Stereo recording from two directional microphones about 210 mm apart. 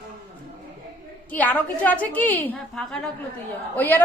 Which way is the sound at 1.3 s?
10° left (ahead or behind).